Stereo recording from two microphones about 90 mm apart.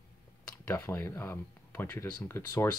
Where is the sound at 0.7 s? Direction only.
25° left (ahead or behind).